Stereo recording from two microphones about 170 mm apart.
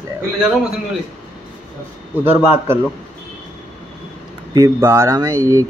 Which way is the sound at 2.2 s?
10° right (ahead or behind).